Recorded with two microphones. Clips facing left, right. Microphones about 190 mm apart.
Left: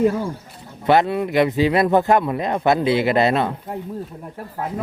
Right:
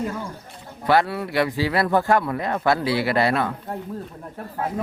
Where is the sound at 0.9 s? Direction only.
20° left (ahead or behind).